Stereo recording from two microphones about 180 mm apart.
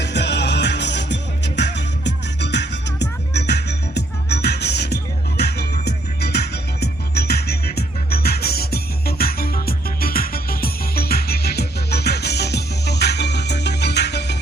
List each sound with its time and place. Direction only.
0.0 s music: 70° left (ahead or behind)